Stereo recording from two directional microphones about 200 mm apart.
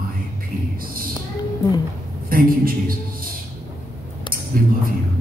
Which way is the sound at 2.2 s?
45° right (ahead or behind).